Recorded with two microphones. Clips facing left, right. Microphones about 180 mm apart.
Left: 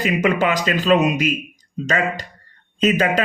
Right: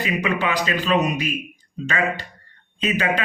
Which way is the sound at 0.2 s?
45° left (ahead or behind).